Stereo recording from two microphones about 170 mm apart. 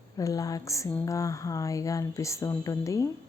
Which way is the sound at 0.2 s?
20° left (ahead or behind).